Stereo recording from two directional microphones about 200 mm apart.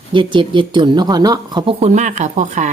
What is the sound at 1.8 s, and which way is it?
Speech, 35° right (ahead or behind).